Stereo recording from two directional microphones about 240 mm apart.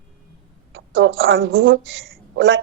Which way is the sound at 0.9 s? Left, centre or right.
Right.